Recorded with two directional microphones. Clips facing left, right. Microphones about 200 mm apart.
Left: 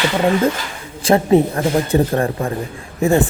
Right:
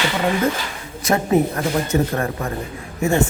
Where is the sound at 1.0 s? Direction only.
30° left (ahead or behind).